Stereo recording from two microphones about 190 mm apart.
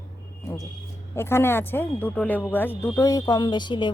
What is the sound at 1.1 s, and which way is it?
Speech, 15° left (ahead or behind).